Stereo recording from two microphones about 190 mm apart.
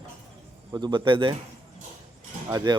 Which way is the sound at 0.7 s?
25° right (ahead or behind).